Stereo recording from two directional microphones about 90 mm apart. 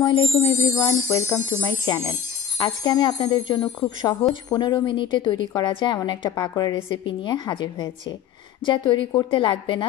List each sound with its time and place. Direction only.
0.0 s music: 70° left (ahead or behind)
0.3 s music: 35° left (ahead or behind)
2.6 s speech: 50° left (ahead or behind)
6.9 s speech: 55° left (ahead or behind)